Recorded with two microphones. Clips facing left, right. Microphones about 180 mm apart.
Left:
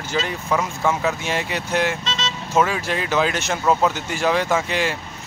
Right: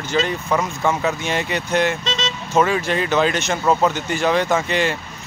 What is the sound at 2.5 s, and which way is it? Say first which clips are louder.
A man's voice: right 2 dB; 5° left (ahead or behind).